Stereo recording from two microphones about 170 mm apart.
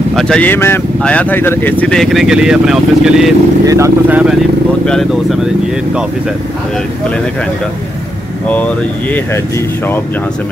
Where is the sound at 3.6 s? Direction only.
20° right (ahead or behind).